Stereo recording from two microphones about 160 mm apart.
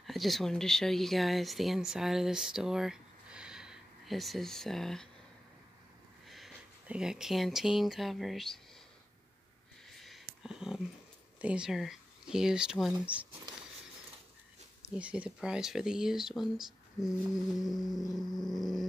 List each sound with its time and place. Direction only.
0.0 s speech: centre (ahead or behind)
6.2 s speech: centre (ahead or behind)
9.9 s a sound: centre (ahead or behind)
11.4 s speech: 5° right (ahead or behind)
14.8 s speech: 10° right (ahead or behind)
17.6 s a sound: 25° left (ahead or behind)
18.1 s speech: centre (ahead or behind)